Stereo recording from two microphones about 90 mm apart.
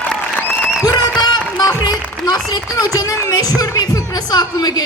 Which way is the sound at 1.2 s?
45° left (ahead or behind).